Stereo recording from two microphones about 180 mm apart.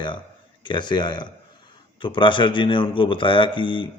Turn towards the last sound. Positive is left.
turn(degrees=25)  # may be behind; listen again after turning